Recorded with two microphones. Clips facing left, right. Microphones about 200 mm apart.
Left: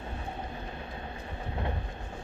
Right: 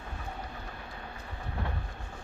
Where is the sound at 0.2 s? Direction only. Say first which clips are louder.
Left 3 dB; 20° left (ahead or behind).